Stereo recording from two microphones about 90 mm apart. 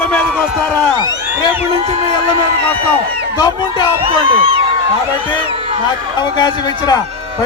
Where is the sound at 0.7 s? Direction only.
50° right (ahead or behind).